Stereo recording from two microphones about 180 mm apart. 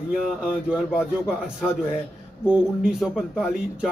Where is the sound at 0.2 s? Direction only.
5° right (ahead or behind).